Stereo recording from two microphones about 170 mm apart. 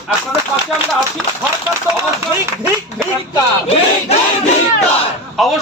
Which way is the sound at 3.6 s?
35° left (ahead or behind).